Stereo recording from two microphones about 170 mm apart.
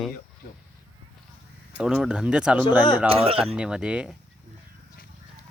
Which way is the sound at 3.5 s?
5° right (ahead or behind).